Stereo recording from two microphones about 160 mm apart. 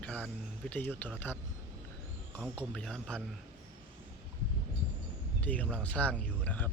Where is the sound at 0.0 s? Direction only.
10° left (ahead or behind).